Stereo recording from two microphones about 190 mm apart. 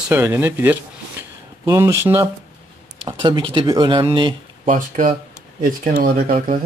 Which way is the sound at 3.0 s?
25° right (ahead or behind).